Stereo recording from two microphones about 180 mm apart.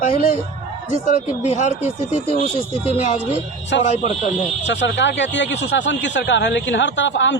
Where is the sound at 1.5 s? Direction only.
40° left (ahead or behind).